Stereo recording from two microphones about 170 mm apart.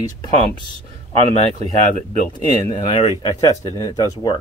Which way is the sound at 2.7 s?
30° left (ahead or behind).